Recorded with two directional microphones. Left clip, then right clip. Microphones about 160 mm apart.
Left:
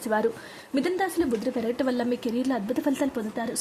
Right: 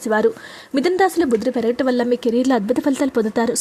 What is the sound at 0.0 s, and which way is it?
A woman's voice, 30° right (ahead or behind).